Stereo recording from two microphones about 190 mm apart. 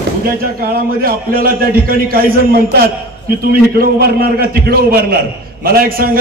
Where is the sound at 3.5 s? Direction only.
50° right (ahead or behind).